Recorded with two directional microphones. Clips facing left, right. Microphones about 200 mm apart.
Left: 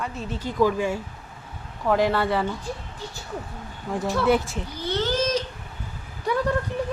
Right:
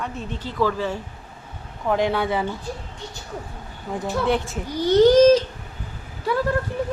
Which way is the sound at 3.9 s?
Centre (ahead or behind).